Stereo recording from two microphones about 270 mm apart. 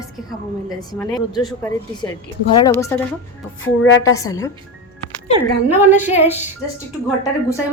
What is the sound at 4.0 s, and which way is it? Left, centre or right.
Speech, centre.